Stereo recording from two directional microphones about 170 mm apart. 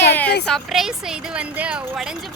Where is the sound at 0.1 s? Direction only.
10° left (ahead or behind).